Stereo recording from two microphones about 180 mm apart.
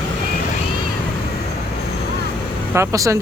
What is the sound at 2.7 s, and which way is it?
Speech, 15° right (ahead or behind).